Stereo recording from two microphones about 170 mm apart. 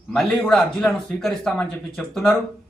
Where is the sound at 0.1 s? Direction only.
Centre (ahead or behind).